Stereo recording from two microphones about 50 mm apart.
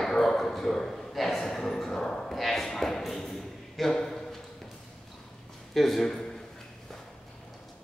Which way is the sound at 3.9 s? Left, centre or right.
Centre.